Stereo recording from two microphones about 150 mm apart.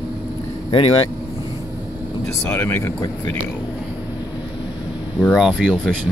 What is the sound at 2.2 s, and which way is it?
Speech, 10° left (ahead or behind).